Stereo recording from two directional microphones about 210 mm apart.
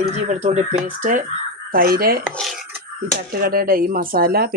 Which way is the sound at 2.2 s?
5° left (ahead or behind).